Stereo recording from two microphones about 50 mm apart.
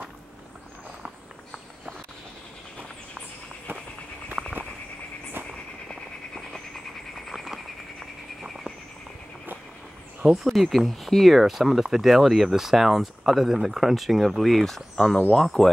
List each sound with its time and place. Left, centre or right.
4.3 s walk: right
5.9 s a sound: centre
7.2 s a sound: centre
10.3 s speech: centre
15.0 s speech: centre
15.3 s speech: centre